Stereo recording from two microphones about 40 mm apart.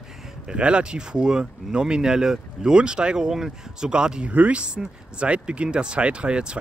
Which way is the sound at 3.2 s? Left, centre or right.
Centre.